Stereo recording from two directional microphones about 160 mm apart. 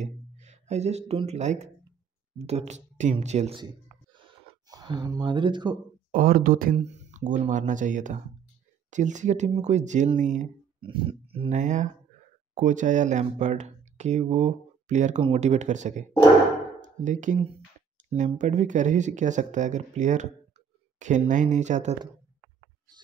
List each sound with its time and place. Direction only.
0.0 s speech: 45° right (ahead or behind)
4.2 s a sound: 25° right (ahead or behind)
6.1 s speech: 60° right (ahead or behind)
6.8 s speech: 45° right (ahead or behind)
10.8 s speech: 30° right (ahead or behind)
11.5 s speech: 50° right (ahead or behind)